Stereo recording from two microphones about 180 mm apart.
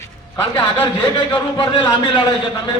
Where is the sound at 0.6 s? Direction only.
30° left (ahead or behind).